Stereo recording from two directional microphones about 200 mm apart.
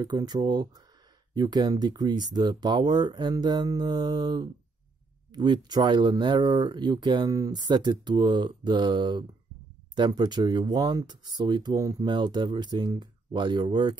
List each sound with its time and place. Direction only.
0.0 s speech: 20° right (ahead or behind)